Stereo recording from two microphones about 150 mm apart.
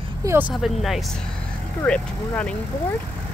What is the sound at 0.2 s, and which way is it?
Speech, 20° right (ahead or behind).